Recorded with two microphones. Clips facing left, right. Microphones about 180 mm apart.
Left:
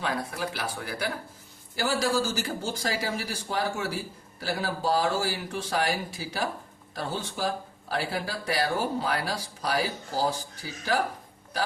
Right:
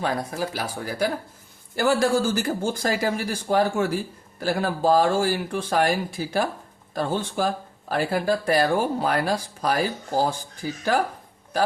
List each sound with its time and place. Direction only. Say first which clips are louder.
0.0 s speech: right 4 dB; 40° right (ahead or behind)
1.7 s speech: right 6 dB; 55° right (ahead or behind)